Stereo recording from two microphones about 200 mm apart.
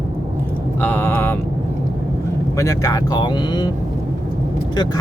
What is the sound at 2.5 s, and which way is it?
Speech, 15° left (ahead or behind).